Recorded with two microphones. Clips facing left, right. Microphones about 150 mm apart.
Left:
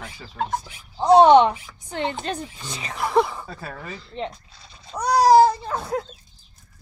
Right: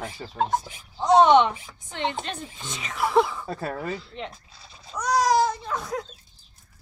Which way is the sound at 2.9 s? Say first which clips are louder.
Left 1 dB; centre (ahead or behind).